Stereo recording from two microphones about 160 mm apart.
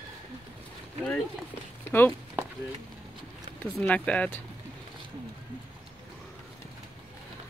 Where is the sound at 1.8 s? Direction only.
15° left (ahead or behind).